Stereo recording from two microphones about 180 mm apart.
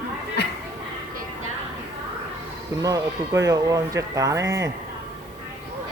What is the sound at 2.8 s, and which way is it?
Speech, 20° right (ahead or behind).